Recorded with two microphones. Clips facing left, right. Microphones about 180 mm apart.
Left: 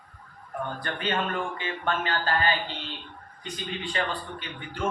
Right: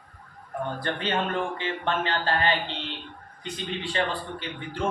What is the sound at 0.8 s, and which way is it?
Speech, 30° right (ahead or behind).